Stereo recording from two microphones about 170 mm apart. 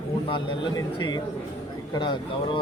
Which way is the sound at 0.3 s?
30° left (ahead or behind).